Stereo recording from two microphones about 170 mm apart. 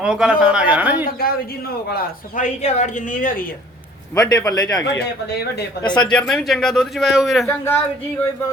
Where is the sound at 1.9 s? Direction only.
50° left (ahead or behind).